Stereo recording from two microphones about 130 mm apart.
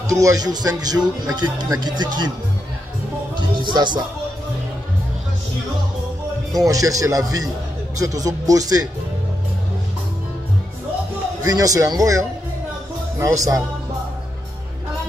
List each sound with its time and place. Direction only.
0.0 s speech: 25° right (ahead or behind)
3.3 s music: 35° right (ahead or behind)
6.5 s speech: 25° right (ahead or behind)
11.4 s speech: 30° right (ahead or behind)